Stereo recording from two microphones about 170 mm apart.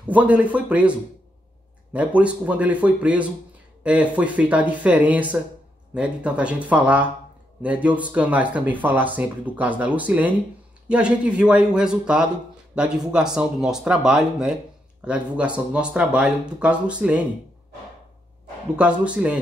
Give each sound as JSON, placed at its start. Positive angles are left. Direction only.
{"t": 0.0, "sound": "speech", "side_deg": -10}
{"t": 2.0, "sound": "speech", "side_deg": -5}
{"t": 18.8, "sound": "speech", "side_deg": -5}